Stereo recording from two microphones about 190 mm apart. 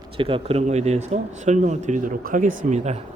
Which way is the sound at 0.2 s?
30° right (ahead or behind).